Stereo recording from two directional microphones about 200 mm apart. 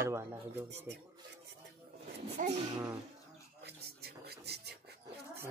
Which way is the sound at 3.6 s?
55° right (ahead or behind).